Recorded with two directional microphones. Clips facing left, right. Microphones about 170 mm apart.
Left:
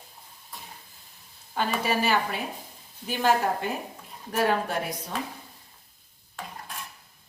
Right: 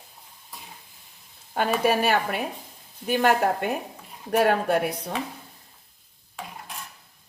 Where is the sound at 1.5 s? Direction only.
60° right (ahead or behind).